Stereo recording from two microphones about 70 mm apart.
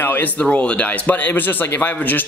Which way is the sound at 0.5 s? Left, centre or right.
Centre.